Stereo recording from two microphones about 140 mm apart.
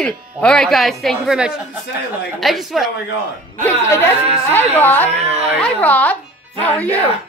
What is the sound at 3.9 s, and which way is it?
Speech, 20° left (ahead or behind).